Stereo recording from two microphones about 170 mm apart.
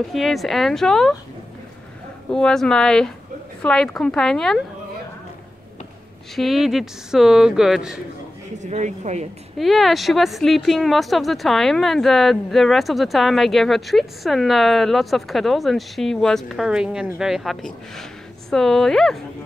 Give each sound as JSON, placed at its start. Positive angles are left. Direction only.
{"t": 0.1, "sound": "speech", "side_deg": 0}
{"t": 2.3, "sound": "speech", "side_deg": 5}
{"t": 6.3, "sound": "speech", "side_deg": 0}
{"t": 8.5, "sound": "speech", "side_deg": -45}
{"t": 9.6, "sound": "speech", "side_deg": 0}